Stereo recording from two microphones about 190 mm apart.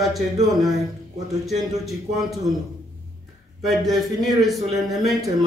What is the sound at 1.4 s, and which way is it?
A man's voice, centre (ahead or behind).